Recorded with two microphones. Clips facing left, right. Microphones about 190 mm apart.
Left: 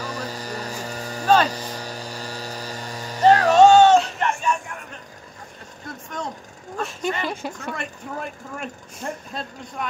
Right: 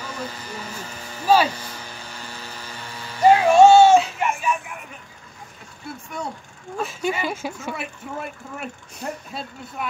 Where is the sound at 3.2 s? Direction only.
10° right (ahead or behind).